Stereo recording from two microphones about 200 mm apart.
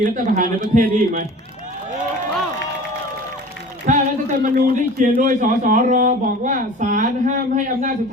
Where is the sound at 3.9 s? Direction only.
40° right (ahead or behind).